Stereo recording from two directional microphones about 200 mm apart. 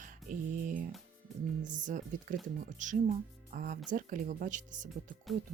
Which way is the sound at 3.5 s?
40° right (ahead or behind).